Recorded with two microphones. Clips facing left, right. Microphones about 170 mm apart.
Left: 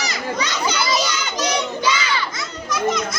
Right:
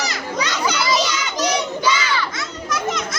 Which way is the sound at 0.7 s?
Centre (ahead or behind).